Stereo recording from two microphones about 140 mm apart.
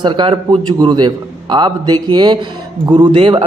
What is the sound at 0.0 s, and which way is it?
Speech, 35° right (ahead or behind).